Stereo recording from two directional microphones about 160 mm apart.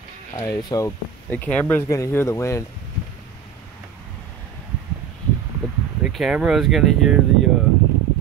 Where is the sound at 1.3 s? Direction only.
10° left (ahead or behind).